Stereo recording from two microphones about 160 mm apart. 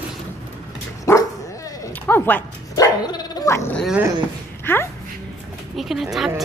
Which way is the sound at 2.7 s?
25° left (ahead or behind).